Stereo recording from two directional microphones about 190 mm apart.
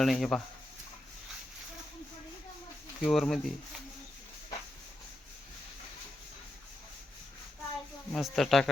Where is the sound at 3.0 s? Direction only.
Centre (ahead or behind).